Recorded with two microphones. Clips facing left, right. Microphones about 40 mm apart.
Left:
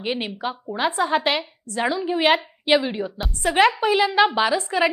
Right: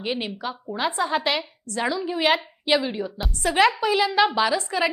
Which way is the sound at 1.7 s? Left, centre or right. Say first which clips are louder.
Left 3 dB; left.